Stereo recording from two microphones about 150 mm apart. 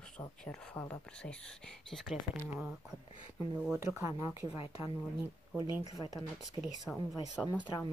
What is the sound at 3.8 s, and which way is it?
Speech, 20° right (ahead or behind).